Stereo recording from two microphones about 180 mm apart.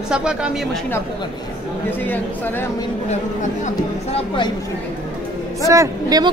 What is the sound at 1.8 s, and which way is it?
Speech, 10° left (ahead or behind).